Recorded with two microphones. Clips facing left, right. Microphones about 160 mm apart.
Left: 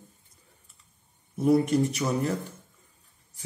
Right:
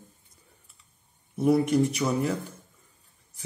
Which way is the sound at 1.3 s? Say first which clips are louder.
Even; centre (ahead or behind).